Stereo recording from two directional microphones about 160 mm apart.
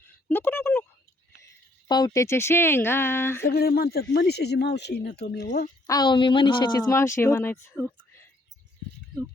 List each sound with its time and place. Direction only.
0.3 s speech: 10° left (ahead or behind)
1.9 s speech: 25° left (ahead or behind)
3.5 s speech: 70° left (ahead or behind); by 5.5 s 90° left
5.5 s a woman's voice: 55° left (ahead or behind)
5.8 s speech: 25° left (ahead or behind)